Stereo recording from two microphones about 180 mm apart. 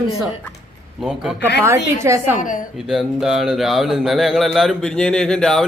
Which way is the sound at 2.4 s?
45° left (ahead or behind).